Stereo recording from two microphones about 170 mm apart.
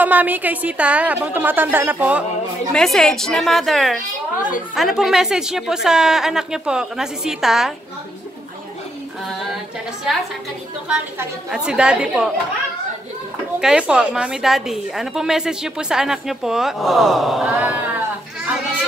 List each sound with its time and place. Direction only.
0.0 s a woman's voice: 10° right (ahead or behind)
2.7 s a woman's voice: centre (ahead or behind)
10.9 s a woman's voice: 5° right (ahead or behind)
13.6 s a woman's voice: 5° right (ahead or behind)